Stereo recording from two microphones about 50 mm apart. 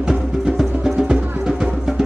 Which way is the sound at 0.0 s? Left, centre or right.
Centre.